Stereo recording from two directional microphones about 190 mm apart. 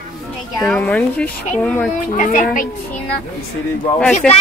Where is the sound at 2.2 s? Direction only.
45° left (ahead or behind).